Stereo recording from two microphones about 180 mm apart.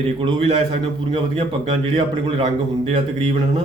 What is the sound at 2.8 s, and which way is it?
Speech, 30° right (ahead or behind).